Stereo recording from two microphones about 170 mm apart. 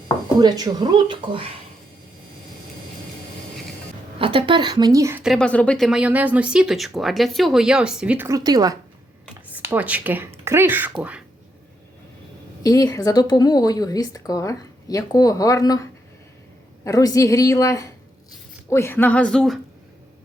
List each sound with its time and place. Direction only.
0.3 s speech: 25° right (ahead or behind)
4.2 s speech: 30° right (ahead or behind)
5.2 s speech: centre (ahead or behind)
8.4 s speech: 20° right (ahead or behind)
9.5 s speech: 10° right (ahead or behind)
12.6 s a woman's voice: 20° left (ahead or behind); by 19.5 s 5° left (ahead or behind)